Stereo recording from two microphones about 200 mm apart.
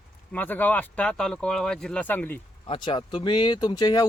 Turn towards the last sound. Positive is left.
turn(degrees=20)  # may be behind; listen again after turning